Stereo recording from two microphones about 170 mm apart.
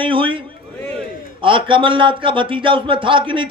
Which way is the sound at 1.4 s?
30° right (ahead or behind).